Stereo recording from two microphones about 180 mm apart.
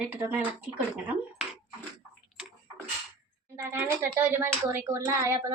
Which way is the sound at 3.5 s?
15° right (ahead or behind).